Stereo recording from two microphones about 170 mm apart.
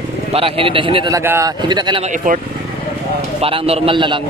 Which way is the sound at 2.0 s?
50° right (ahead or behind).